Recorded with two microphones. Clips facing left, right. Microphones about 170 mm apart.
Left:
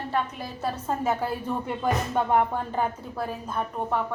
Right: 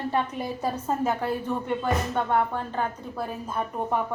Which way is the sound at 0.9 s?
5° left (ahead or behind).